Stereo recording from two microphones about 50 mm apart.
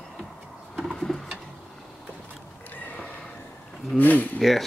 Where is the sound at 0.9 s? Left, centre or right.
Centre.